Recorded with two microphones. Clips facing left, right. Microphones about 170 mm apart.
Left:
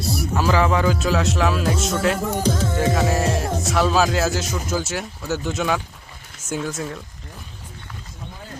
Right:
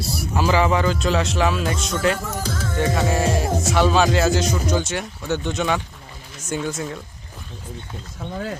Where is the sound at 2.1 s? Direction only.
35° left (ahead or behind).